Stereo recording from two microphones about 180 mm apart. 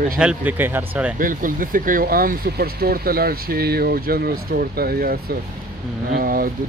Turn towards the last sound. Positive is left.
turn(degrees=-55)  # may be behind; listen again after turning